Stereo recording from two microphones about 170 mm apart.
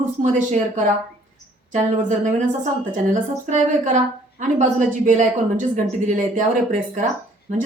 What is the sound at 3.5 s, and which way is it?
A woman's voice, 45° right (ahead or behind).